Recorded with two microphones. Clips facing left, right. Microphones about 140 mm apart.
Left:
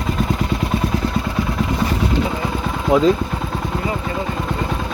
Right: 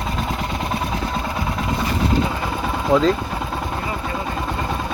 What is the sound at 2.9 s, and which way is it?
Vehicle, 20° left (ahead or behind).